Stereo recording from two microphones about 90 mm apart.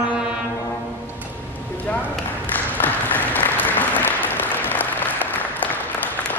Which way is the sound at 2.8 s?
20° left (ahead or behind).